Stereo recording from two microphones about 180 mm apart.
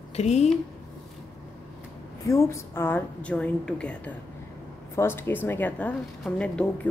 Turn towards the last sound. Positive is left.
turn(degrees=5)  # may be behind; listen again after turning